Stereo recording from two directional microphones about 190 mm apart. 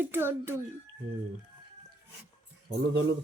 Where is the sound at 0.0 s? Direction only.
10° right (ahead or behind).